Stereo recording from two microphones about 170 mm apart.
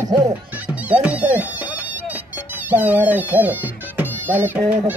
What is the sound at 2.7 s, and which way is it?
Speech, 10° right (ahead or behind).